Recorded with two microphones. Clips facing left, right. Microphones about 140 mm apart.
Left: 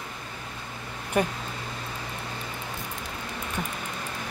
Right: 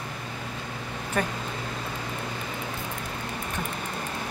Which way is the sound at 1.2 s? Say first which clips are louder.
Left 3 dB; 10° left (ahead or behind).